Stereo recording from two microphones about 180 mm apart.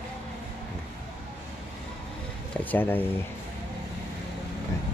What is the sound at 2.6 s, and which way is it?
Speech, 10° left (ahead or behind).